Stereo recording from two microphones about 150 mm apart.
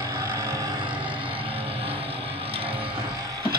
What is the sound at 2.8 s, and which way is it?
Music, 35° right (ahead or behind).